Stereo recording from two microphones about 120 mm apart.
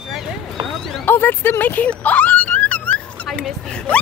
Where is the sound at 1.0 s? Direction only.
15° left (ahead or behind).